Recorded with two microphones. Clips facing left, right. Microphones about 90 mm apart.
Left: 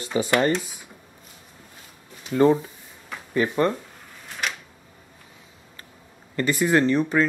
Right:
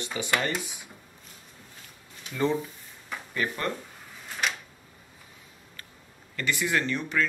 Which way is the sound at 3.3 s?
25° left (ahead or behind).